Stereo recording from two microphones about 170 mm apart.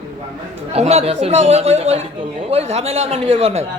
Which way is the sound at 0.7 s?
40° right (ahead or behind).